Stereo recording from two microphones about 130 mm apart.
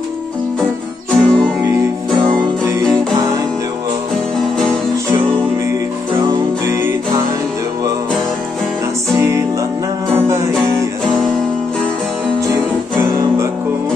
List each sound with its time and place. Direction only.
1.1 s music: 5° left (ahead or behind)
10.1 s music: 20° right (ahead or behind)